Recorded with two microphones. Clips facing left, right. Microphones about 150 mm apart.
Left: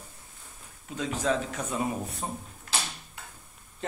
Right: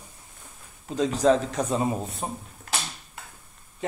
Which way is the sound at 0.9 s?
35° right (ahead or behind).